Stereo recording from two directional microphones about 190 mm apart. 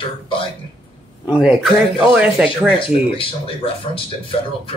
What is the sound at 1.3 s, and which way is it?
Speech, 5° right (ahead or behind).